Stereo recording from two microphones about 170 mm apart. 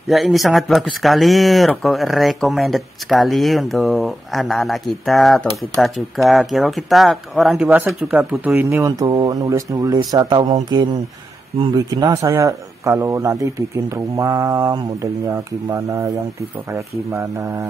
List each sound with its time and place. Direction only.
0.1 s speech: centre (ahead or behind); by 17.6 s 15° right (ahead or behind)